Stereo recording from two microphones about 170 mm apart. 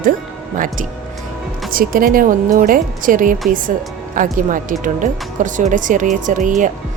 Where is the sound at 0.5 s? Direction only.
50° right (ahead or behind).